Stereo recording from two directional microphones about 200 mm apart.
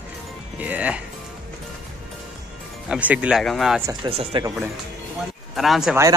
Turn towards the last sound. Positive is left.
turn(degrees=0)  # may be behind; listen again after turning